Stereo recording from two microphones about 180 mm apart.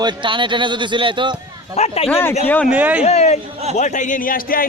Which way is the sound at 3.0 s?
35° left (ahead or behind).